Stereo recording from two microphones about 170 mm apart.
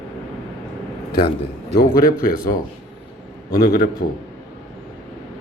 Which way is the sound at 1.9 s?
60° left (ahead or behind).